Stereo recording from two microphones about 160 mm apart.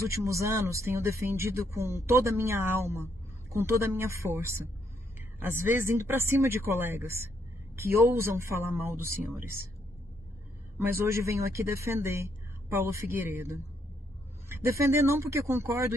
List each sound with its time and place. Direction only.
0.2 s speech: 20° right (ahead or behind)
11.0 s speech: 15° right (ahead or behind)
14.5 s speech: 15° right (ahead or behind)